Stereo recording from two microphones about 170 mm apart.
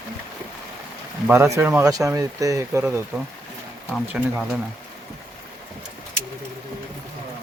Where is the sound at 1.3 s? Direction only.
15° right (ahead or behind).